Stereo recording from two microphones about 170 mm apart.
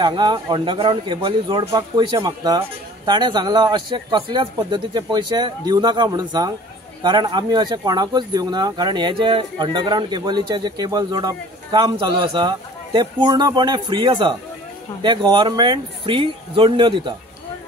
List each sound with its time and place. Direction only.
0.0 s speech: 25° right (ahead or behind)